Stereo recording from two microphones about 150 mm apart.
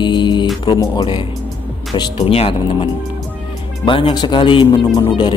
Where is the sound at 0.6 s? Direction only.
30° left (ahead or behind).